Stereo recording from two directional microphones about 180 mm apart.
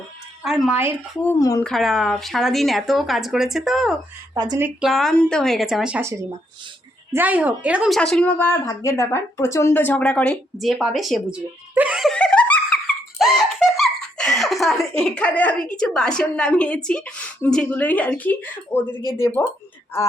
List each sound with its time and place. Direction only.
0.4 s speech: 5° right (ahead or behind)
1.2 s a woman's voice: 15° left (ahead or behind)
1.6 s speech: centre (ahead or behind)
4.4 s speech: 20° right (ahead or behind)
4.6 s a woman's voice: centre (ahead or behind); by 19.5 s 15° left (ahead or behind)